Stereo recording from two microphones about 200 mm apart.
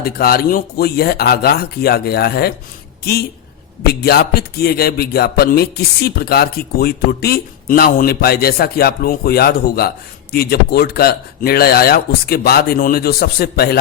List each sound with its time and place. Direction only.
0.0 s a woman's voice: 50° left (ahead or behind)